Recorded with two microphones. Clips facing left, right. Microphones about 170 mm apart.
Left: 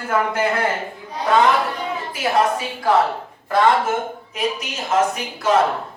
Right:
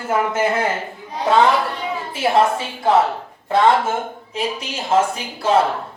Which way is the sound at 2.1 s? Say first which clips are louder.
Right 3 dB; 25° right (ahead or behind).